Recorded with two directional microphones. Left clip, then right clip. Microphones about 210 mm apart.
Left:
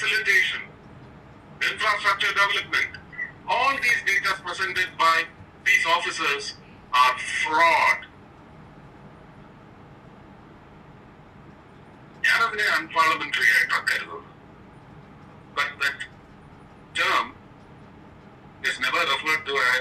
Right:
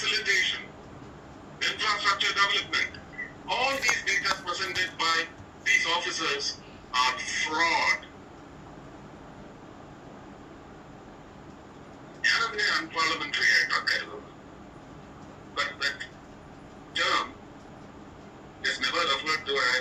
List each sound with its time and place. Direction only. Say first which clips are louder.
0.0 s a sound: left 5 dB; 25° left (ahead or behind)
1.5 s a man's voice: left 4 dB; 25° left (ahead or behind)
12.2 s a man's voice: left 4 dB; 25° left (ahead or behind)
15.5 s a man's voice: left 4 dB; 25° left (ahead or behind)
18.6 s a man's voice: left 4 dB; 25° left (ahead or behind)